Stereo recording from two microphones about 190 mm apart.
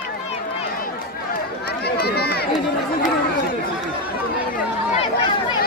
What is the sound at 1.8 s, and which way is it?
Run, 55° left (ahead or behind).